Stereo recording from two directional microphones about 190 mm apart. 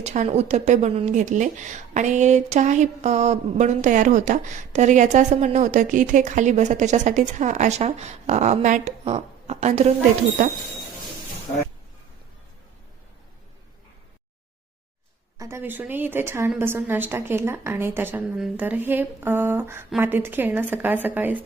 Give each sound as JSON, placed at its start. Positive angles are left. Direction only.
{"t": 0.0, "sound": "a woman's voice", "side_deg": -35}
{"t": 15.4, "sound": "a woman's voice", "side_deg": -15}